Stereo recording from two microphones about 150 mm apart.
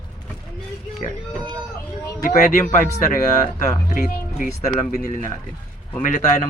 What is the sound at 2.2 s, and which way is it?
Speech, 60° left (ahead or behind).